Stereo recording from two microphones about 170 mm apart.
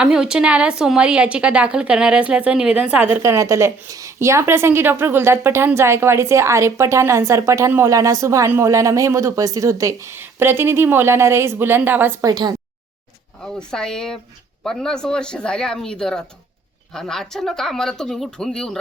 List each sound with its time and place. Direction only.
0.0 s a woman's voice: 5° right (ahead or behind)
12.3 s a woman's voice: 25° right (ahead or behind)
13.4 s speech: 5° left (ahead or behind)